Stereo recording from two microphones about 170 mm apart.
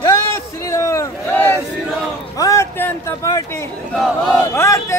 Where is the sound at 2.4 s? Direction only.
20° left (ahead or behind).